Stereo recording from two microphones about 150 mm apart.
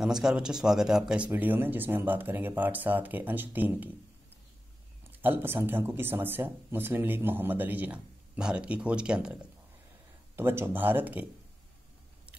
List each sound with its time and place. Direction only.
0.0 s speech: 5° right (ahead or behind)
5.2 s speech: 15° right (ahead or behind)